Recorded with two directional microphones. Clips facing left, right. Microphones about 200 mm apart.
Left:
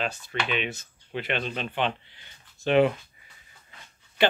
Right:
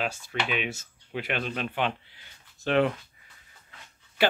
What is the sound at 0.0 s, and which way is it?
Speech, 5° right (ahead or behind).